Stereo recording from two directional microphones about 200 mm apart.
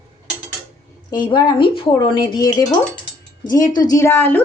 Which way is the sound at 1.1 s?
20° left (ahead or behind).